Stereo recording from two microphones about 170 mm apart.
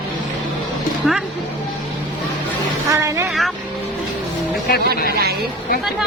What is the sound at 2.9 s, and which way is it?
Speech, 15° right (ahead or behind).